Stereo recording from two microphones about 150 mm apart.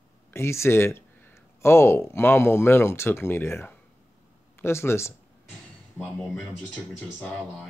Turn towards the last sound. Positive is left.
turn(degrees=10)  # may be behind; listen again after turning